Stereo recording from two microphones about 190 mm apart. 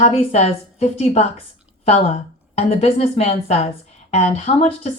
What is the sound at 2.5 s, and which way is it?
A woman's voice, 35° left (ahead or behind).